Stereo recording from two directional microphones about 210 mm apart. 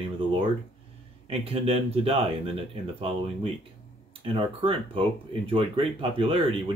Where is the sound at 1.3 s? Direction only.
25° right (ahead or behind).